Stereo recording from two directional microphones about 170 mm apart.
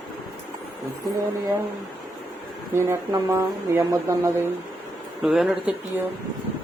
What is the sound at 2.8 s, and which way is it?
Speech, 15° right (ahead or behind).